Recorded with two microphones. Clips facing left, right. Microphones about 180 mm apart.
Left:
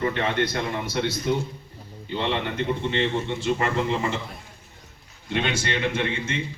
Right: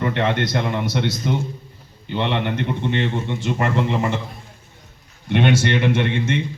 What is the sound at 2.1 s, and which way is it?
Speech, 65° right (ahead or behind).